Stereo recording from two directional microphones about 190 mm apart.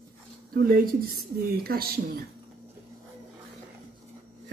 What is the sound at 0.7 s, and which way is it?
Speech, 50° right (ahead or behind).